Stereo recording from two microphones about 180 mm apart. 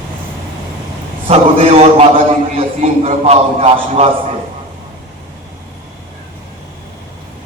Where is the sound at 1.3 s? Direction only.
35° right (ahead or behind).